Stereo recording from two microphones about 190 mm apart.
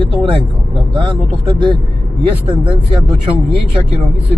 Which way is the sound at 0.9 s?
25° right (ahead or behind).